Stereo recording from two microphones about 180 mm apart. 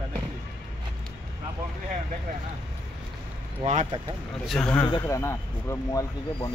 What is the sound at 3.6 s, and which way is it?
Speech, 40° right (ahead or behind).